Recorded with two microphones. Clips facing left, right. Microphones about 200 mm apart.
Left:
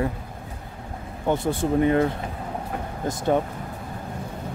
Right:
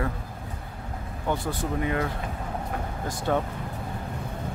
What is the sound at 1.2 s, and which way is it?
Speech, 25° left (ahead or behind).